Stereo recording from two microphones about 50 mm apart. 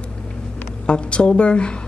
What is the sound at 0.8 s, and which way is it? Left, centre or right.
Speech, left.